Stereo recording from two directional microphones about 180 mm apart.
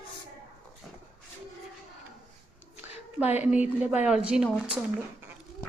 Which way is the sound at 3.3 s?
10° right (ahead or behind).